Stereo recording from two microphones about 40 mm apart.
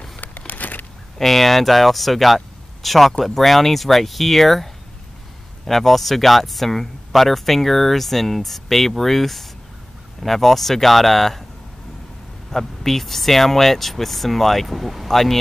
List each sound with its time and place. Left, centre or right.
0.5 s a sound: left
1.1 s speech: centre
5.7 s speech: centre
12.4 s speech: centre